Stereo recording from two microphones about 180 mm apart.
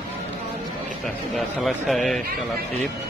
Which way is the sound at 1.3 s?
Centre (ahead or behind).